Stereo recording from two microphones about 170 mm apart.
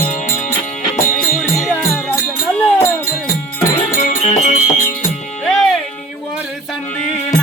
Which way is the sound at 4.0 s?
45° left (ahead or behind).